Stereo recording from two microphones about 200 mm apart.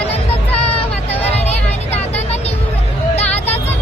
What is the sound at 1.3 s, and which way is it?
Vehicle, 30° left (ahead or behind).